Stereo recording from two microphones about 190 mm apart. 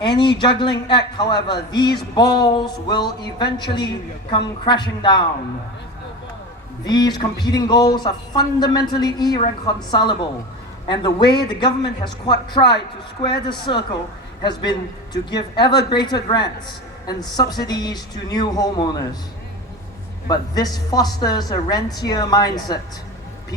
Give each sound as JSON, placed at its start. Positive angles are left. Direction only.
{"t": 0.0, "sound": "speech", "side_deg": 25}
{"t": 6.8, "sound": "speech", "side_deg": 20}
{"t": 10.8, "sound": "speech", "side_deg": 25}
{"t": 20.2, "sound": "speech", "side_deg": 20}